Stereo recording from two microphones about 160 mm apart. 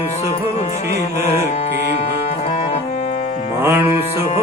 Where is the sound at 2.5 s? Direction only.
45° left (ahead or behind).